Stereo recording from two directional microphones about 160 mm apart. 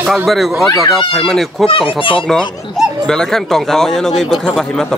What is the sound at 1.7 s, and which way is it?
Speech, 35° left (ahead or behind).